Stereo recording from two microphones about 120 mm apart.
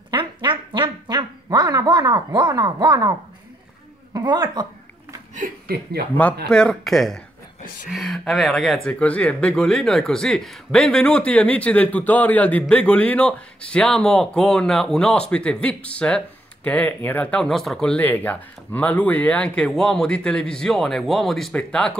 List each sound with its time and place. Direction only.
0.1 s a man's voice: 45° right (ahead or behind)
6.1 s speech: 10° left (ahead or behind)